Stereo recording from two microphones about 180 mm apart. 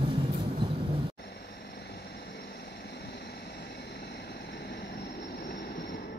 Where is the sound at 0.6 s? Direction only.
25° right (ahead or behind).